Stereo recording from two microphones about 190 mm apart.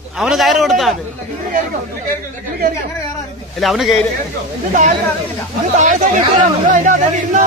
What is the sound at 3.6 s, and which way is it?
Speech, centre (ahead or behind).